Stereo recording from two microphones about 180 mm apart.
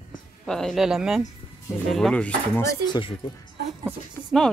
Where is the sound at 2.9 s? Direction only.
30° left (ahead or behind).